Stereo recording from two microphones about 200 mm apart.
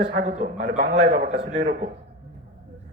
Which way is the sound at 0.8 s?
55° right (ahead or behind).